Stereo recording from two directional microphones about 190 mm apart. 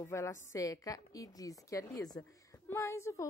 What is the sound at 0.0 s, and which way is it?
A woman's voice, 15° left (ahead or behind).